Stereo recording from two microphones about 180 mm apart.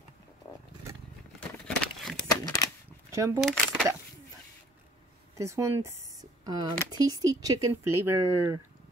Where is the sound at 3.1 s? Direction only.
15° right (ahead or behind).